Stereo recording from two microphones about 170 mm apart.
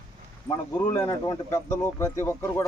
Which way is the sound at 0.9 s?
20° left (ahead or behind).